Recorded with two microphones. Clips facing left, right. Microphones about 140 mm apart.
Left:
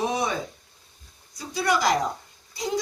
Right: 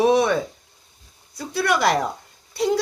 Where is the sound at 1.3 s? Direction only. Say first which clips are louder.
Right 3 dB; 65° right (ahead or behind).